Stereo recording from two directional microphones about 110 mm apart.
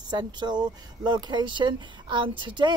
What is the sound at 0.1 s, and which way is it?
Speech, 40° right (ahead or behind).